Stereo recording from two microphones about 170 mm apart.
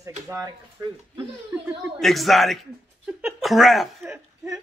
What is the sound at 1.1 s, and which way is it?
A man's voice, 5° right (ahead or behind).